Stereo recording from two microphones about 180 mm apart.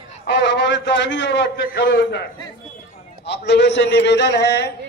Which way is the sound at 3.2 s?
70° left (ahead or behind).